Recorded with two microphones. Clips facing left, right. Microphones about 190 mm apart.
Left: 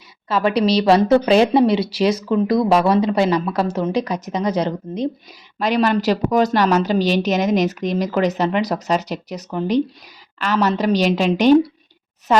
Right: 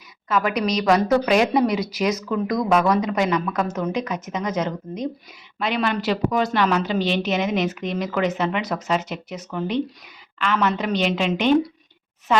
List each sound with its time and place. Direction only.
0.3 s a woman's voice: 30° left (ahead or behind)